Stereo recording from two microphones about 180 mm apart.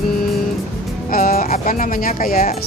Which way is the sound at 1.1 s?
50° left (ahead or behind).